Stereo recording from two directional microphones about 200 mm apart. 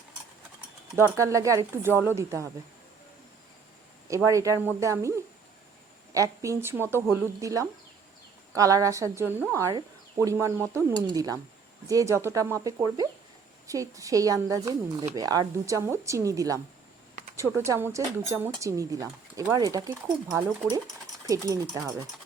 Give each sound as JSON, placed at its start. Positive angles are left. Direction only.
{"t": 0.9, "sound": "speech", "side_deg": -15}
{"t": 4.1, "sound": "speech", "side_deg": -15}